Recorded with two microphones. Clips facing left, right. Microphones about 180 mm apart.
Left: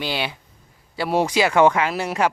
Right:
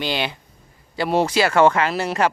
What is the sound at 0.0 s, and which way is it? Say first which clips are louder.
Speech: right 2 dB; 5° left (ahead or behind).